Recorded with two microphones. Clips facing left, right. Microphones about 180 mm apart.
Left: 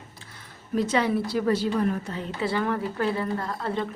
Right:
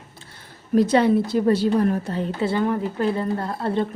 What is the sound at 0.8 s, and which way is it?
A woman's voice, 35° right (ahead or behind).